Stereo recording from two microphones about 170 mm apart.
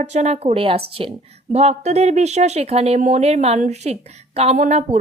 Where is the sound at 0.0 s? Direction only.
40° right (ahead or behind).